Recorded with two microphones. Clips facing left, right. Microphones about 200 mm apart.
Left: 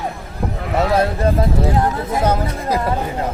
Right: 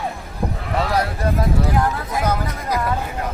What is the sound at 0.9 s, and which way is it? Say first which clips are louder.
Speech: left 5 dB; 25° left (ahead or behind).